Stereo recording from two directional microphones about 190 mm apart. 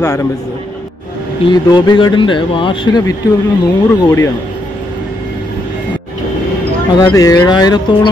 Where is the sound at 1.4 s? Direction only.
20° left (ahead or behind).